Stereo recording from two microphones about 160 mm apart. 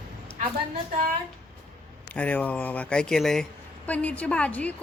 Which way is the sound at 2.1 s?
10° left (ahead or behind).